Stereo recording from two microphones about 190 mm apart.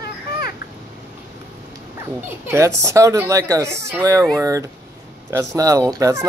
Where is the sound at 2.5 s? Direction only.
15° right (ahead or behind).